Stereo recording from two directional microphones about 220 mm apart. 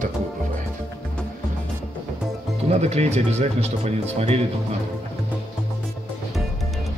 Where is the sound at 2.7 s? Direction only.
30° right (ahead or behind).